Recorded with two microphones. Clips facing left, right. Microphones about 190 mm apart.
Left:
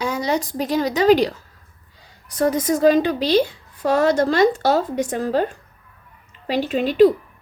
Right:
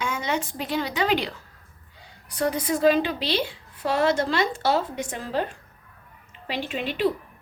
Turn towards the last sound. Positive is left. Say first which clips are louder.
# left 10 dB
turn(degrees=40)  # may be behind; listen again after turning